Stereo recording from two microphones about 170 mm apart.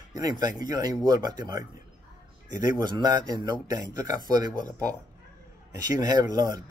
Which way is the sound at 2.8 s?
25° right (ahead or behind).